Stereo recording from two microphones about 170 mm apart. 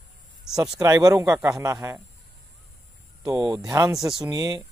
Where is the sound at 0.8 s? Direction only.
20° right (ahead or behind).